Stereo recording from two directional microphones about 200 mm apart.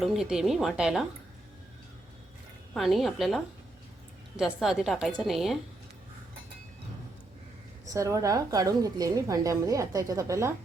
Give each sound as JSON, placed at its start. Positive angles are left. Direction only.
{"t": 0.0, "sound": "a woman's voice", "side_deg": 0}
{"t": 2.7, "sound": "a woman's voice", "side_deg": 0}
{"t": 7.9, "sound": "a woman's voice", "side_deg": -15}